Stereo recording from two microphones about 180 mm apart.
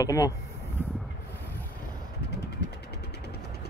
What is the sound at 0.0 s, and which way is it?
Speech, 20° left (ahead or behind).